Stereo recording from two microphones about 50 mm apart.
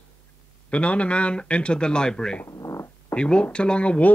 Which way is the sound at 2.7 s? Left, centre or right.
Left.